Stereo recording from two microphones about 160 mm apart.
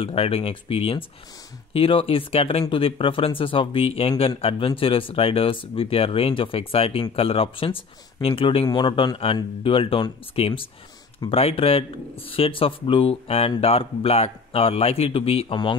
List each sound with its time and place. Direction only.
0.0 s speech: 40° left (ahead or behind)